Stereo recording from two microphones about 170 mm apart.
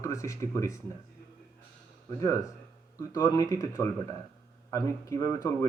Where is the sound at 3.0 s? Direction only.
20° left (ahead or behind).